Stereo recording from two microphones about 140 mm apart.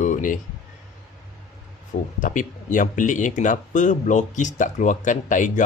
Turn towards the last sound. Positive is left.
turn(degrees=65)  # may be behind; listen again after turning